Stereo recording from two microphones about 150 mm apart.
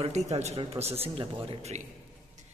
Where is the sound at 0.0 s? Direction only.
45° right (ahead or behind).